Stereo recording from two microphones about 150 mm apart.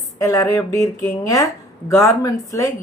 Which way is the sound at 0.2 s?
20° left (ahead or behind).